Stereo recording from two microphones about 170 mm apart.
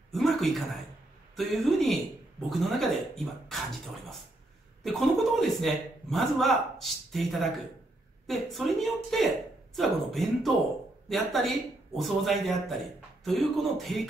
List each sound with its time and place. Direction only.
0.1 s a man's voice: centre (ahead or behind)
4.8 s a man's voice: centre (ahead or behind)